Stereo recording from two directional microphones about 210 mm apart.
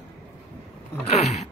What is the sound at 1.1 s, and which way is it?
Speech, 30° left (ahead or behind).